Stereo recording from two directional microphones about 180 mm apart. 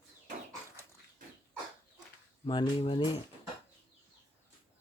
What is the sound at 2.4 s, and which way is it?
Speech, 30° left (ahead or behind).